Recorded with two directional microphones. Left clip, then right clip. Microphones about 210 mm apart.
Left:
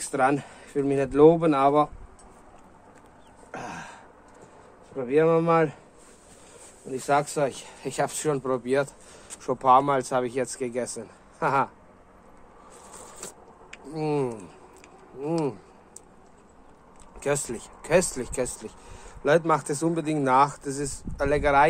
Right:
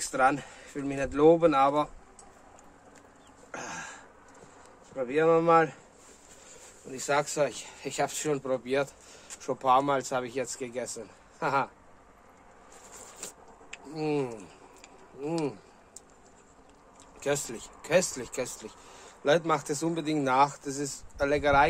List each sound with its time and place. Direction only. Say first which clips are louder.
0.0 s speech: left 2 dB; 30° left (ahead or behind)
3.5 s a sound: left 2 dB; 30° left (ahead or behind)
4.9 s speech: left 3 dB; 30° left (ahead or behind)
6.9 s speech: left 4 dB; 25° left (ahead or behind)
12.9 s a sound: left 2 dB; 25° left (ahead or behind)
15.1 s speech: left 4 dB; 20° left (ahead or behind)
17.2 s speech: left 3 dB; 25° left (ahead or behind)